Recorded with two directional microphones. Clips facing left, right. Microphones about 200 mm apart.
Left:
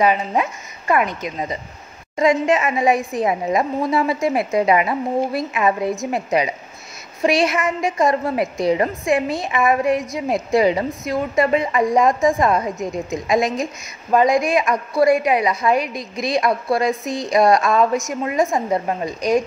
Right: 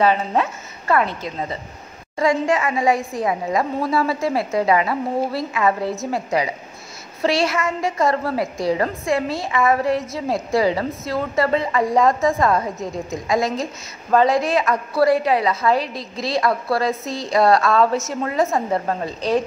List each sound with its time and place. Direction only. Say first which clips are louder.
0.0 s a woman's voice: even; 10° left (ahead or behind)